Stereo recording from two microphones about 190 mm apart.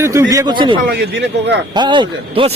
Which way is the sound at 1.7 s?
25° right (ahead or behind).